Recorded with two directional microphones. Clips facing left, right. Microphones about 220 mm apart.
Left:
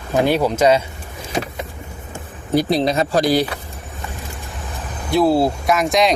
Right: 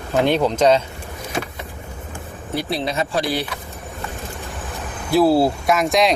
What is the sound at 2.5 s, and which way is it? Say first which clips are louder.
Speech: left 7 dB; 40° left (ahead or behind).